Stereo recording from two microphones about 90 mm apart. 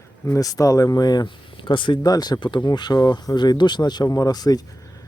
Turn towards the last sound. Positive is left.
turn(degrees=45)  # may be behind; listen again after turning